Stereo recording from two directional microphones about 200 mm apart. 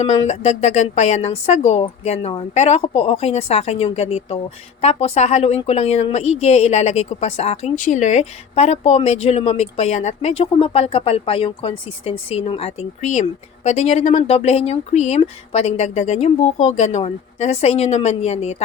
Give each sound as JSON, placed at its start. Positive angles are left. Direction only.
{"t": 0.0, "sound": "speech", "side_deg": 30}